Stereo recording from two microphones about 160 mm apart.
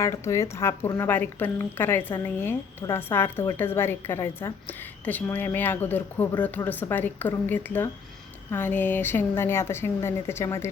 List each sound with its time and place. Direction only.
0.0 s a woman's voice: 20° left (ahead or behind)